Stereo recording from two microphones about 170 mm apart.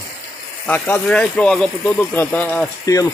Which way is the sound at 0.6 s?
10° left (ahead or behind).